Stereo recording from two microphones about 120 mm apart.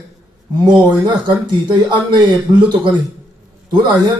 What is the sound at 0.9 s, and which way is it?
A man's voice, 40° right (ahead or behind).